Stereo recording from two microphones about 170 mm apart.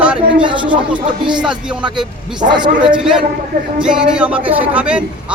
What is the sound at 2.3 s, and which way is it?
Speech, 25° right (ahead or behind).